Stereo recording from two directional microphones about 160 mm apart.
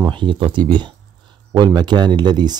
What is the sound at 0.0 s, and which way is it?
Speech, 30° right (ahead or behind).